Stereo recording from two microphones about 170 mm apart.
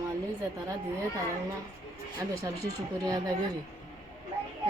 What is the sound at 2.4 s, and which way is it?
Speech, 20° right (ahead or behind).